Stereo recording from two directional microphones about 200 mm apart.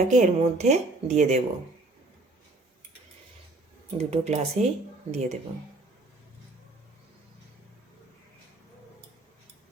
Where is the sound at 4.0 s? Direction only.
30° right (ahead or behind).